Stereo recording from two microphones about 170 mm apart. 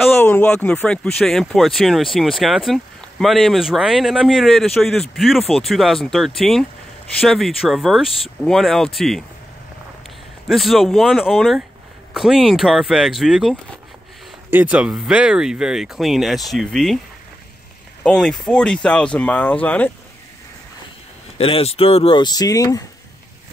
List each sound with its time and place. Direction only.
0.0 s speech: 10° left (ahead or behind)
10.5 s speech: centre (ahead or behind)
18.0 s speech: 5° left (ahead or behind)
21.4 s speech: 35° left (ahead or behind)